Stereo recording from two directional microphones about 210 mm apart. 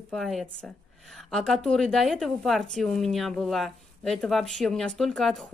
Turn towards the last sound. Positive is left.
turn(degrees=0)  # may be behind; listen again after turning